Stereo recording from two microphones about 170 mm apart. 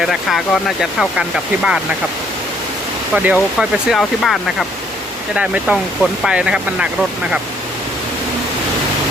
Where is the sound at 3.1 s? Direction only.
10° right (ahead or behind).